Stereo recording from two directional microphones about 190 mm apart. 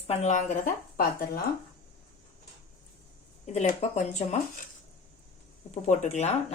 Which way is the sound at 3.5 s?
35° left (ahead or behind).